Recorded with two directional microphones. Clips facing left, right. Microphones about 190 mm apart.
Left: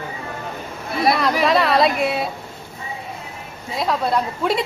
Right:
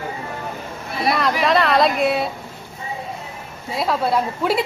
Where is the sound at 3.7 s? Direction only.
Centre (ahead or behind).